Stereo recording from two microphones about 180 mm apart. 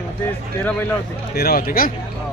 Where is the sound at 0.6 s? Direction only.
10° left (ahead or behind).